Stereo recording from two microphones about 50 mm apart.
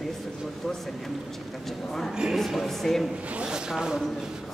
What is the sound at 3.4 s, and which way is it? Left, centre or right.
Speech, centre.